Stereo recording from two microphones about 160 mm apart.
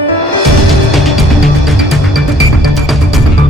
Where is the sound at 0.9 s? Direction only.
Centre (ahead or behind).